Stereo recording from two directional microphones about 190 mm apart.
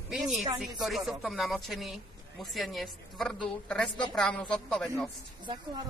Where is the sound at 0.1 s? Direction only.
Centre (ahead or behind).